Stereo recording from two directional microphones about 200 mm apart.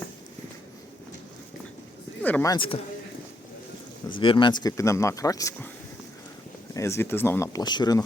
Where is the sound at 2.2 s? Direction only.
10° left (ahead or behind).